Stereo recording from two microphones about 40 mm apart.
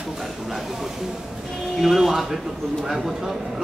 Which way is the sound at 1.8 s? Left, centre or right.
Centre.